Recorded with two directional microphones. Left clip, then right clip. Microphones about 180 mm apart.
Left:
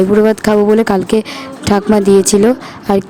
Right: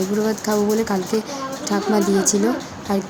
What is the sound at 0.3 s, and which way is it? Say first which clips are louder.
A woman's voice: left 10 dB; 50° left (ahead or behind).